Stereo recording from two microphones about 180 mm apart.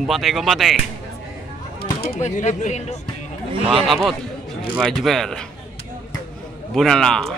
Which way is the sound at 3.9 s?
Centre (ahead or behind).